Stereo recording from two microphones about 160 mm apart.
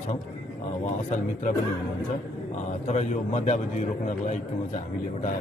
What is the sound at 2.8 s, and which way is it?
A man's voice, 45° left (ahead or behind).